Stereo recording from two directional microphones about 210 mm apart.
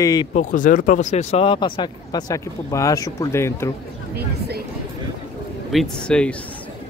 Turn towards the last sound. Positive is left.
turn(degrees=5)  # may be behind; listen again after turning